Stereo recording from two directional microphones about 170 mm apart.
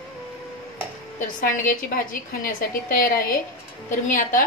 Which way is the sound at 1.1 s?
50° left (ahead or behind).